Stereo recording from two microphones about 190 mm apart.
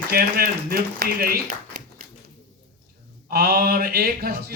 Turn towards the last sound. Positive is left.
turn(degrees=-55)  # may be behind; listen again after turning